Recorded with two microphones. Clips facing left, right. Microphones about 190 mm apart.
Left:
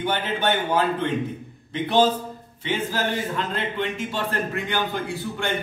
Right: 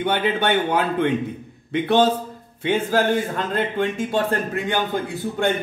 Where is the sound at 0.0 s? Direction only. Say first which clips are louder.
Right 3 dB; 65° right (ahead or behind); by 4.2 s 45° right (ahead or behind).